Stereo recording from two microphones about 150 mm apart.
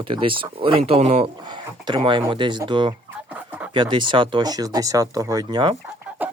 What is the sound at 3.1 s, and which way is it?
Fowl, 10° right (ahead or behind).